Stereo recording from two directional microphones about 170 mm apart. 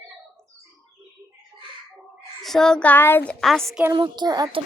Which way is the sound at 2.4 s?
Centre (ahead or behind).